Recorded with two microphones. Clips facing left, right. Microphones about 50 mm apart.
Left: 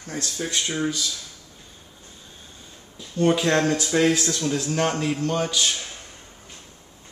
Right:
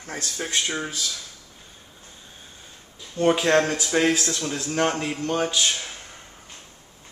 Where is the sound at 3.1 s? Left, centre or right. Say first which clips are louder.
Right 1 dB; right.